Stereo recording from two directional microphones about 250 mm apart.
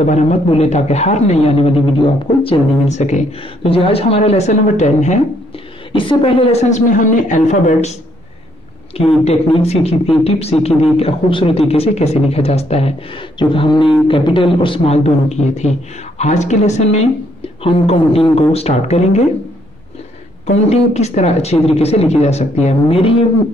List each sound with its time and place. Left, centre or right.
0.0 s speech: left
20.4 s speech: left